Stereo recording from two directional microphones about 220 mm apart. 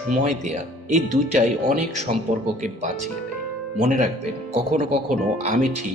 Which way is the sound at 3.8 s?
35° right (ahead or behind).